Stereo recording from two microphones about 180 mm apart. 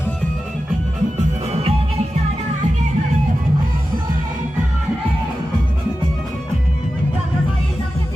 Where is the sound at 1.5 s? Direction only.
35° right (ahead or behind).